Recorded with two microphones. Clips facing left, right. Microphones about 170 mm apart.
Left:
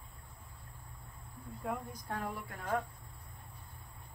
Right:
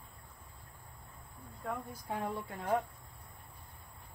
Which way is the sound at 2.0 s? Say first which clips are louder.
Right 3 dB; 20° right (ahead or behind).